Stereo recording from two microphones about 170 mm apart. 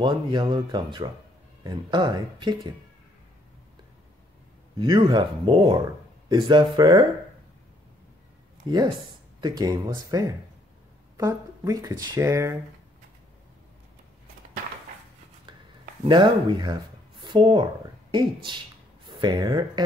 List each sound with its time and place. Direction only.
0.0 s speech: 25° right (ahead or behind)
4.7 s speech: 30° right (ahead or behind)
8.6 s speech: 25° right (ahead or behind)
16.0 s speech: 30° right (ahead or behind)